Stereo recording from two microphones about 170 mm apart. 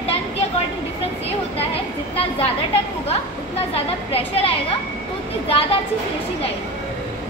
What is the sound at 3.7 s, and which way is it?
Speech, 35° left (ahead or behind).